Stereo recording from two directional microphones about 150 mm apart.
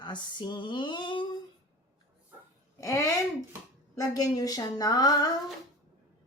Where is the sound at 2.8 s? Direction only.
20° left (ahead or behind).